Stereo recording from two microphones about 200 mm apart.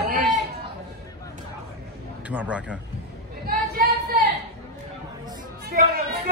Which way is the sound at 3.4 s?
50° right (ahead or behind).